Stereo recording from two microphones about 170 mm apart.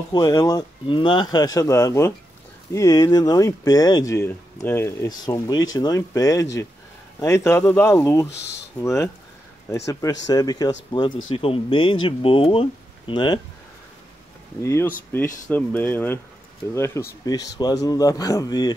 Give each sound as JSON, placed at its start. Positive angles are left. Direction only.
{"t": 0.1, "sound": "speech", "side_deg": 20}
{"t": 8.3, "sound": "speech", "side_deg": 90}
{"t": 8.8, "sound": "speech", "side_deg": 15}
{"t": 14.6, "sound": "speech", "side_deg": 15}